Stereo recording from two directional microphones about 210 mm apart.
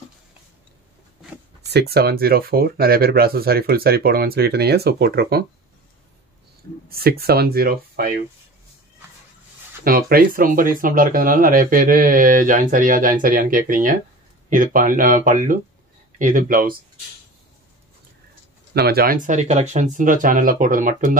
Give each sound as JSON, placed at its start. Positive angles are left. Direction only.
{"t": 1.7, "sound": "speech", "side_deg": -50}
{"t": 6.9, "sound": "speech", "side_deg": -45}
{"t": 9.8, "sound": "speech", "side_deg": -45}
{"t": 18.7, "sound": "speech", "side_deg": -50}